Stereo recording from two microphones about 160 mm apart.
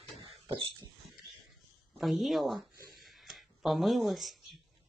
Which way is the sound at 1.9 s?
Centre (ahead or behind).